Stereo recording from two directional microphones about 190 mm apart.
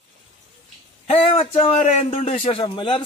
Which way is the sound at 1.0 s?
30° left (ahead or behind).